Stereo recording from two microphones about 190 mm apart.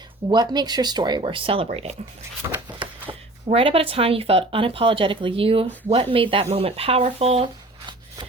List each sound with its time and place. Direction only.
0.3 s speech: 20° right (ahead or behind)
3.1 s speech: 30° right (ahead or behind)